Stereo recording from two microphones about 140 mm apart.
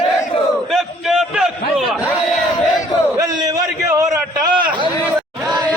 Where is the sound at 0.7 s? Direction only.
Centre (ahead or behind).